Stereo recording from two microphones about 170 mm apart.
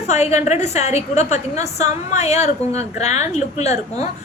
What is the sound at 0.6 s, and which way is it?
A woman's voice, 40° left (ahead or behind).